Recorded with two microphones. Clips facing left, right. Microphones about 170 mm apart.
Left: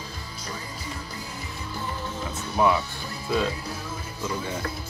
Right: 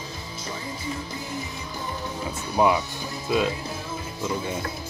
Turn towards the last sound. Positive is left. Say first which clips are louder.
# right 2 dB
turn(degrees=-20)  # may be behind; listen again after turning